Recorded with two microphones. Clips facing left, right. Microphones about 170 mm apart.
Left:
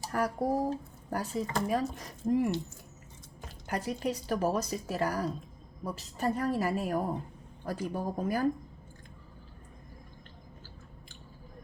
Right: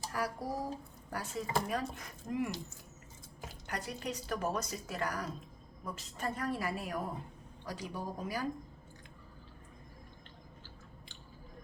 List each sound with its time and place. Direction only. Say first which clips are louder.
0.1 s speech: left 9 dB; 50° left (ahead or behind)
1.1 s speech: left 7 dB; 40° left (ahead or behind)
1.5 s speech: left 2 dB; 5° right (ahead or behind)
2.0 s speech: left 8 dB; 35° left (ahead or behind)
3.7 s speech: left 7 dB; 40° left (ahead or behind)